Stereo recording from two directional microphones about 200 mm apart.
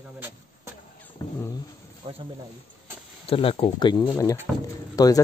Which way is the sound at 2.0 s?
30° right (ahead or behind).